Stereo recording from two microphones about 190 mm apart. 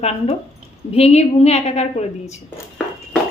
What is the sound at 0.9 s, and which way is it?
A woman's voice, 35° left (ahead or behind).